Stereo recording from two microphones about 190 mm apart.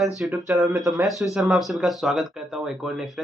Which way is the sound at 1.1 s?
Centre (ahead or behind).